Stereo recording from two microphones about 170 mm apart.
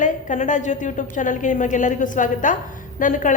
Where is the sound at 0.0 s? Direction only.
50° left (ahead or behind).